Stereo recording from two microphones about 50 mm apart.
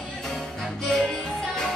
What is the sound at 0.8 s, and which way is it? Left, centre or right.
Music, centre.